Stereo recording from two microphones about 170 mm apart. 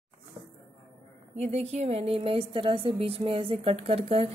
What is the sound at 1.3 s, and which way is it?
A woman's voice, 40° right (ahead or behind).